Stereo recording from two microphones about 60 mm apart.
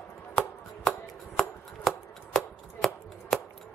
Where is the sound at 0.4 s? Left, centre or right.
Centre.